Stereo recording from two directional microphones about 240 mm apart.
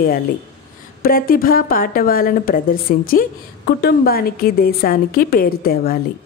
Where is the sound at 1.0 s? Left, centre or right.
Left.